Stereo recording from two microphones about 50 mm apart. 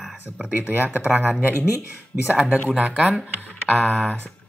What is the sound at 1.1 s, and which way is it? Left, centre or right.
Speech, right.